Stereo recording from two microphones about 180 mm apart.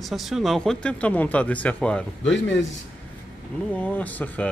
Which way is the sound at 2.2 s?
90° left.